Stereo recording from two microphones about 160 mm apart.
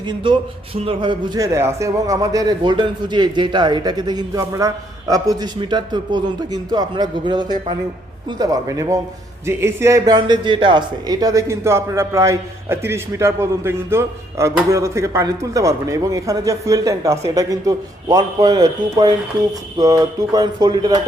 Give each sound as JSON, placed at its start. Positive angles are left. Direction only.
{"t": 0.1, "sound": "speech", "side_deg": -30}